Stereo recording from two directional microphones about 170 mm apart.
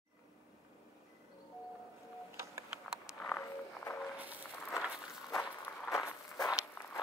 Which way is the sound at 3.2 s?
10° left (ahead or behind).